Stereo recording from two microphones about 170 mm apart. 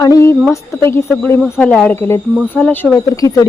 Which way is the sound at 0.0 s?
20° left (ahead or behind).